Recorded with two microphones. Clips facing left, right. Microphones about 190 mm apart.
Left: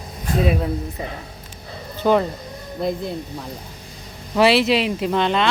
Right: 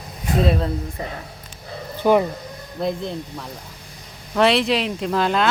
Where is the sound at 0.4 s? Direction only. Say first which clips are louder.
Even; 10° left (ahead or behind).